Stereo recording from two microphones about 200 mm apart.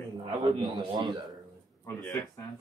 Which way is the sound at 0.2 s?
25° right (ahead or behind).